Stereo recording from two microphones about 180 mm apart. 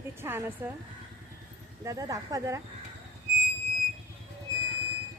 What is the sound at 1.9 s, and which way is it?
Speech, 20° right (ahead or behind).